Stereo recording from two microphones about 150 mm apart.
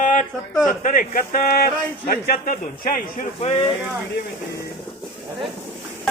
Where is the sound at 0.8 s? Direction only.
65° left (ahead or behind).